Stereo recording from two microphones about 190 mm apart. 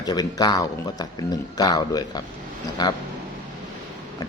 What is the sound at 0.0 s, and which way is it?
A man's voice, 20° left (ahead or behind).